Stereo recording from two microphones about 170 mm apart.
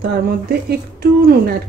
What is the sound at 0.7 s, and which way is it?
Speech, 65° right (ahead or behind).